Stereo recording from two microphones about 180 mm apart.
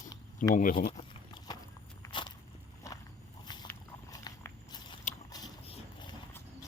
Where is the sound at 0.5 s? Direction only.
50° left (ahead or behind).